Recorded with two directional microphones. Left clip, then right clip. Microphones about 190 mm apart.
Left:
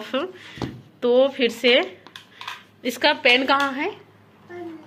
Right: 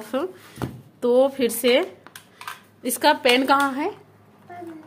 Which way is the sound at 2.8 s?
25° right (ahead or behind).